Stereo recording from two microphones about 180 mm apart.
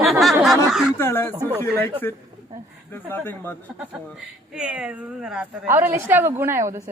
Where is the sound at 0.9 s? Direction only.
15° left (ahead or behind).